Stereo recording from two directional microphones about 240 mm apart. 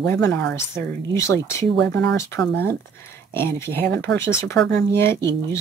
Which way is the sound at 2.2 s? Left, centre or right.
Centre.